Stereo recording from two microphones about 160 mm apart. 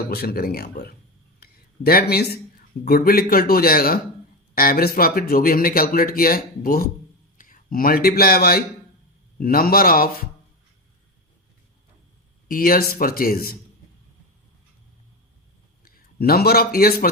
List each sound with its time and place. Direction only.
0.0 s a man's voice: 75° left (ahead or behind)
1.4 s a sound: 70° left (ahead or behind)
2.8 s a man's voice: 70° left (ahead or behind)
12.5 s speech: 65° left (ahead or behind)
15.8 s a man's voice: 70° left (ahead or behind)